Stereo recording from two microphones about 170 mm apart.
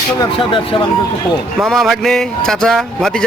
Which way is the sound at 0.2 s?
30° left (ahead or behind).